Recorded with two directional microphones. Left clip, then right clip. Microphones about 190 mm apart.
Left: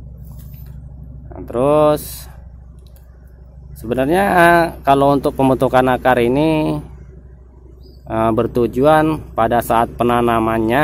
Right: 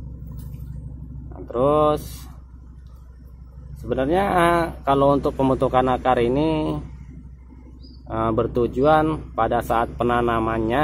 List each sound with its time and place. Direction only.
1.5 s speech: 55° left (ahead or behind)
3.9 s speech: 55° left (ahead or behind)
8.1 s speech: 55° left (ahead or behind)